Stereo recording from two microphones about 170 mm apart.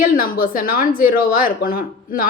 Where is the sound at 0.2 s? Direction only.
55° left (ahead or behind).